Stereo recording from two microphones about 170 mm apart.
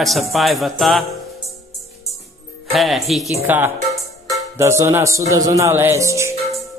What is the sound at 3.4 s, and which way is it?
Speech, 15° right (ahead or behind).